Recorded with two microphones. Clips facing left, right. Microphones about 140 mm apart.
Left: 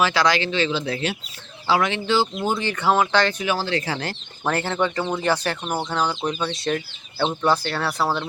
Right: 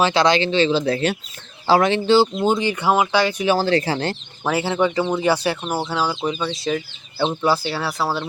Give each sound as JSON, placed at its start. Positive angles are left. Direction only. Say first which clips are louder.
{"t": 0.0, "sound": "speech", "louder": "right 3 dB", "side_deg": -25}
{"t": 2.4, "sound": "speech", "louder": "right 4 dB", "side_deg": -15}
{"t": 3.6, "sound": "speech", "louder": "right 6 dB", "side_deg": -35}
{"t": 4.4, "sound": "speech", "louder": "right 3 dB", "side_deg": -5}